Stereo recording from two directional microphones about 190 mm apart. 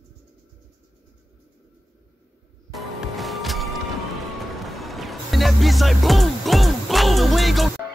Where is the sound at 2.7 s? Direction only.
Centre (ahead or behind).